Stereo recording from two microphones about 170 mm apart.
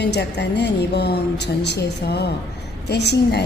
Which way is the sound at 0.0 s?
80° left.